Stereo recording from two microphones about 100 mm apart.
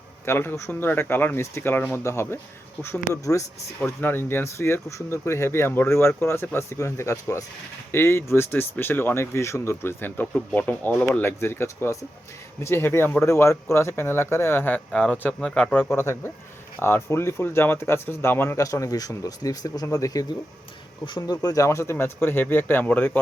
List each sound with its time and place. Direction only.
0.3 s speech: 25° left (ahead or behind)
14.8 s speech: 10° left (ahead or behind); by 20.2 s 35° left (ahead or behind)
21.2 s speech: 35° left (ahead or behind); by 23.2 s 20° left (ahead or behind)